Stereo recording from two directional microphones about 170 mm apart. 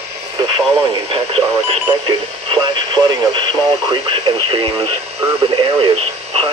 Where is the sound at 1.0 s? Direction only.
35° right (ahead or behind).